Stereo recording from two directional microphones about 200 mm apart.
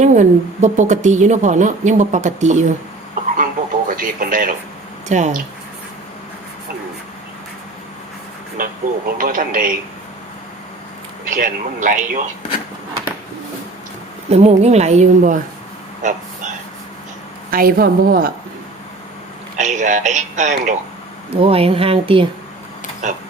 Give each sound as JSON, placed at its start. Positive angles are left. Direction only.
{"t": 0.0, "sound": "a woman's voice", "side_deg": -35}
{"t": 3.3, "sound": "a sound", "side_deg": -45}
{"t": 5.0, "sound": "a woman's voice", "side_deg": -35}
{"t": 8.6, "sound": "a woman's voice", "side_deg": -40}
{"t": 11.3, "sound": "a woman's voice", "side_deg": -40}
{"t": 14.3, "sound": "a woman's voice", "side_deg": -35}
{"t": 17.5, "sound": "a woman's voice", "side_deg": -45}
{"t": 19.5, "sound": "a woman's voice", "side_deg": -35}
{"t": 23.0, "sound": "a woman's voice", "side_deg": -35}